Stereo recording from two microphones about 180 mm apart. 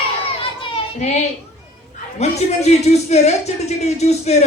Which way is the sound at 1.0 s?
40° left (ahead or behind).